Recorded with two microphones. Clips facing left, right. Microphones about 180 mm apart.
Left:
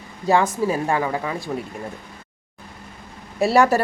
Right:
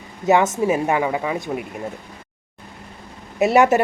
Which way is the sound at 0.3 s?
20° right (ahead or behind).